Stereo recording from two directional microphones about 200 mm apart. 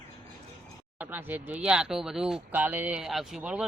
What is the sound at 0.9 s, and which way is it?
Speech, 10° right (ahead or behind).